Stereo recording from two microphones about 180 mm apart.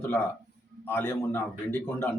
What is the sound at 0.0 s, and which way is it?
Speech, 10° left (ahead or behind).